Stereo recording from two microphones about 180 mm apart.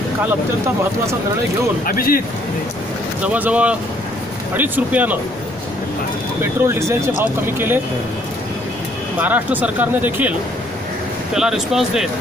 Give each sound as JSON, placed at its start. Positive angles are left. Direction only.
{"t": 1.9, "sound": "speech", "side_deg": 55}
{"t": 3.3, "sound": "speech", "side_deg": -10}
{"t": 6.4, "sound": "speech", "side_deg": -15}
{"t": 9.2, "sound": "speech", "side_deg": -10}
{"t": 11.3, "sound": "speech", "side_deg": -5}